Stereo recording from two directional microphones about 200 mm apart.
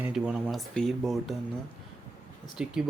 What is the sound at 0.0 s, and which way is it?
Speech, 5° right (ahead or behind).